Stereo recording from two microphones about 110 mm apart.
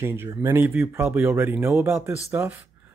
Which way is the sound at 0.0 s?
20° right (ahead or behind).